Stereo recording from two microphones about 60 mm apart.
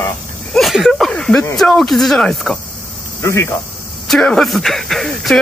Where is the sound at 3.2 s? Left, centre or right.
Left.